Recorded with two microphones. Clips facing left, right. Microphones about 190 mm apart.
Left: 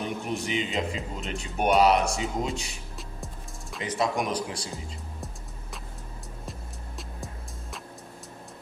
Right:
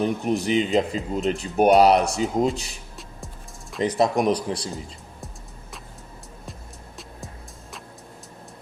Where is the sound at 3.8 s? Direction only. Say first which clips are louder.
Right 7 dB; 40° right (ahead or behind).